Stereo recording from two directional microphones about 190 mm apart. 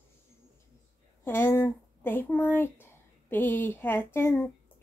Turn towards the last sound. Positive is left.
turn(degrees=15)  # may be behind; listen again after turning